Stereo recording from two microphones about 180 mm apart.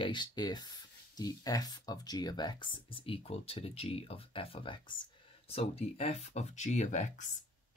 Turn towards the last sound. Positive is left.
turn(degrees=40)  # may be behind; listen again after turning